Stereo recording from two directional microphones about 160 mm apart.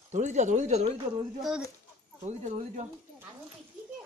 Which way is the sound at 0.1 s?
50° right (ahead or behind).